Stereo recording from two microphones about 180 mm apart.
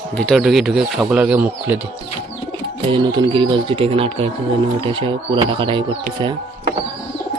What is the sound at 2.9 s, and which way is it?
Speech, 25° right (ahead or behind).